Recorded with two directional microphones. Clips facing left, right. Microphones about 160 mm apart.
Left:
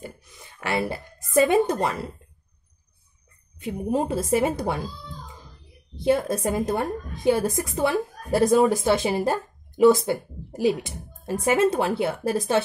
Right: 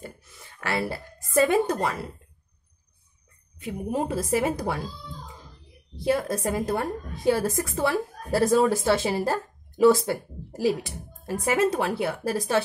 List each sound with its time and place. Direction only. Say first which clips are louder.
0.0 s a sound: left 2 dB; 15° left (ahead or behind)
3.6 s a woman's voice: left 3 dB; 25° left (ahead or behind)
5.9 s a woman's voice: left 3 dB; 25° left (ahead or behind)